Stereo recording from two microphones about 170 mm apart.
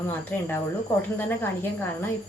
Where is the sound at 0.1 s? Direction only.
10° left (ahead or behind).